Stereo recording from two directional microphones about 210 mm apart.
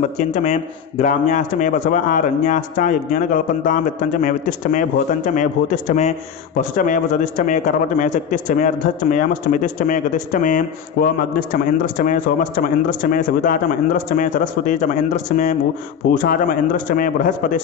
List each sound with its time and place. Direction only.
0.2 s a man's voice: 35° left (ahead or behind)